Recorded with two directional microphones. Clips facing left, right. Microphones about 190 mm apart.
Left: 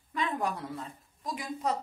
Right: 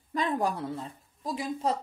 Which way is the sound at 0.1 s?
35° right (ahead or behind).